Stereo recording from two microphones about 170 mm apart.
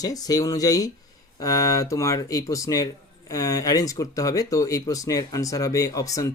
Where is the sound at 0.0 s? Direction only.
20° left (ahead or behind).